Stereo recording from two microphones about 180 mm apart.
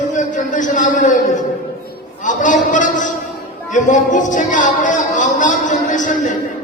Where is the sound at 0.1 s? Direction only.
45° left (ahead or behind).